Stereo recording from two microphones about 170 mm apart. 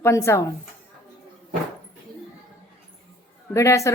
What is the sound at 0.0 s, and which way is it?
Speech, 15° left (ahead or behind).